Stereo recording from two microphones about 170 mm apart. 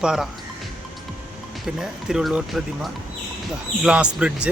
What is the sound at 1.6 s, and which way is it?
A man's voice, centre (ahead or behind).